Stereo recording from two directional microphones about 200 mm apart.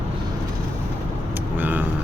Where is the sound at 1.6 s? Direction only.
10° right (ahead or behind).